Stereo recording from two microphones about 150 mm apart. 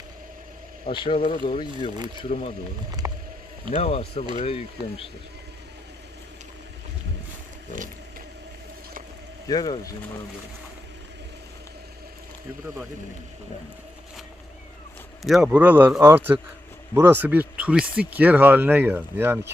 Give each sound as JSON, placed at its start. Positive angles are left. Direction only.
{"t": 0.9, "sound": "speech", "side_deg": 35}
{"t": 3.0, "sound": "a sound", "side_deg": -20}
{"t": 3.8, "sound": "speech", "side_deg": 45}
{"t": 9.5, "sound": "speech", "side_deg": 25}
{"t": 15.2, "sound": "speech", "side_deg": 0}